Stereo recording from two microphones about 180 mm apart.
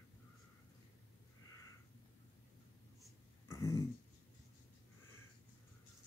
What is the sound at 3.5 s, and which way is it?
Throat clearing, 20° left (ahead or behind).